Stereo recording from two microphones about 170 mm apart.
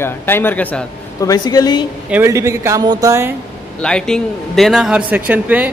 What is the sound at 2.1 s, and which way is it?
A man's voice, 15° right (ahead or behind).